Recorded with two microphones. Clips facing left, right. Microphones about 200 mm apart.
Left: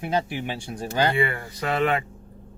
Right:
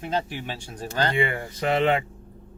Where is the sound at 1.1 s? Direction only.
20° right (ahead or behind).